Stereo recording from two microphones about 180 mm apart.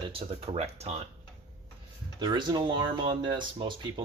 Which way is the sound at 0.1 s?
30° right (ahead or behind).